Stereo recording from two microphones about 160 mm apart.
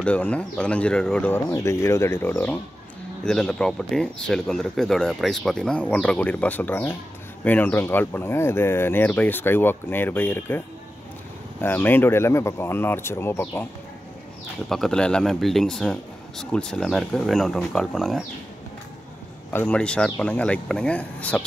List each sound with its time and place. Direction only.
0.0 s speech: 10° left (ahead or behind)
11.6 s speech: 15° left (ahead or behind)
14.7 s speech: 5° left (ahead or behind)
19.5 s speech: 10° left (ahead or behind)